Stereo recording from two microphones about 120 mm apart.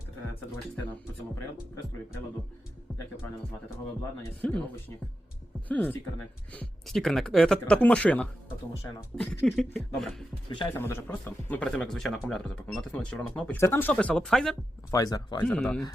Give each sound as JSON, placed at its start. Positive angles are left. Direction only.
{"t": 4.4, "sound": "speech", "side_deg": 10}
{"t": 5.6, "sound": "speech", "side_deg": 15}
{"t": 10.8, "sound": "speech", "side_deg": 20}
{"t": 11.7, "sound": "speech", "side_deg": 5}
{"t": 13.6, "sound": "speech", "side_deg": 20}
{"t": 14.8, "sound": "speech", "side_deg": 30}
{"t": 15.4, "sound": "speech", "side_deg": 10}